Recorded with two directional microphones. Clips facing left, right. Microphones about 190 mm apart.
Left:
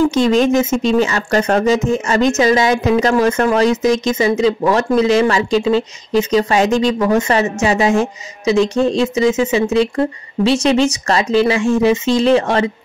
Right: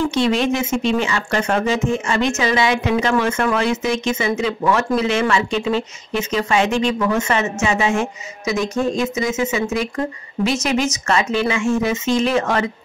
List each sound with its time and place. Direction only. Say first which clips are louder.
0.0 s speech: left 5 dB; 40° left (ahead or behind)